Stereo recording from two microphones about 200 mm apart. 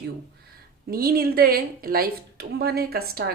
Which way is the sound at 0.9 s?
50° right (ahead or behind).